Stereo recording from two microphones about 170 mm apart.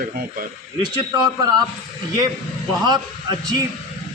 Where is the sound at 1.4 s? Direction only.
25° right (ahead or behind).